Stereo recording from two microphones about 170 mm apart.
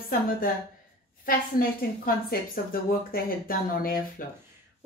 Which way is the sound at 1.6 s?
60° left (ahead or behind).